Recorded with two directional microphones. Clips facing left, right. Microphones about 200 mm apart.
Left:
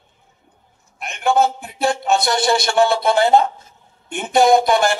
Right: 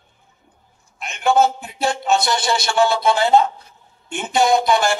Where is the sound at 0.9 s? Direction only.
55° left (ahead or behind).